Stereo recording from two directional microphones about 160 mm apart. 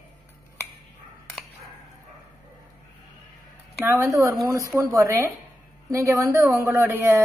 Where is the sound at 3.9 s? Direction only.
20° right (ahead or behind).